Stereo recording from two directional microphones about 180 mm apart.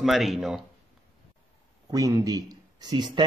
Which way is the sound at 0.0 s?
Centre (ahead or behind).